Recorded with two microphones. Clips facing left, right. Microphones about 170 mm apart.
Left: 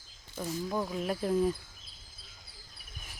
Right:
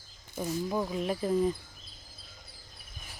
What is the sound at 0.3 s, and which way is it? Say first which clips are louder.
Speech: right 2 dB; 5° right (ahead or behind).